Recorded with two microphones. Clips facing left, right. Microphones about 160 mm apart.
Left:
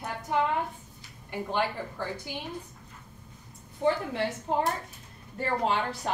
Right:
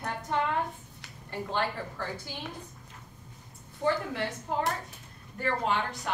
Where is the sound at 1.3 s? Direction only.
15° left (ahead or behind).